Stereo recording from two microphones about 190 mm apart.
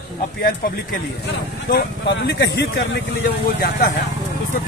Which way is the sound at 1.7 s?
60° left (ahead or behind).